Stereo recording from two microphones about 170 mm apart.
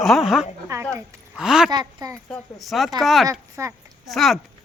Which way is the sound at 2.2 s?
5° left (ahead or behind).